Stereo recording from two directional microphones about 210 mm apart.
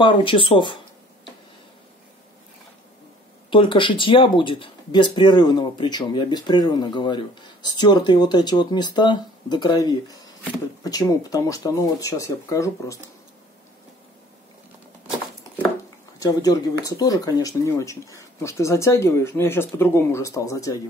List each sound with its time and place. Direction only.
0.0 s speech: 25° left (ahead or behind)
3.4 s speech: 25° left (ahead or behind)
16.2 s speech: 15° left (ahead or behind)